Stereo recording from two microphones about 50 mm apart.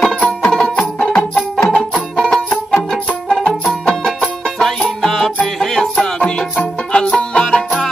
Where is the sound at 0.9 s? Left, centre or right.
Centre.